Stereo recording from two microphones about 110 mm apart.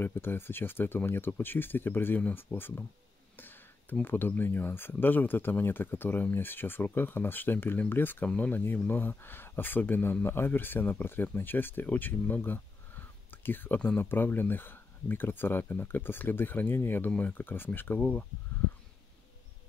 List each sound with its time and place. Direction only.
0.0 s speech: 20° left (ahead or behind)